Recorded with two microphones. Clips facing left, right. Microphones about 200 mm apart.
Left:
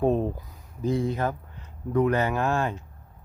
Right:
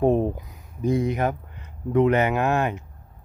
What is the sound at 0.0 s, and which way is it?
Speech, 15° right (ahead or behind).